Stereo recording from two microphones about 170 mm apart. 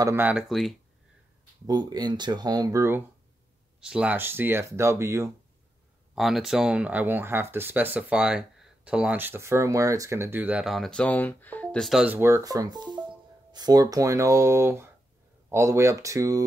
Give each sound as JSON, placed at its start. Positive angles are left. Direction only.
{"t": 0.0, "sound": "speech", "side_deg": -10}
{"t": 1.7, "sound": "speech", "side_deg": -25}
{"t": 3.8, "sound": "speech", "side_deg": -5}
{"t": 6.1, "sound": "speech", "side_deg": 0}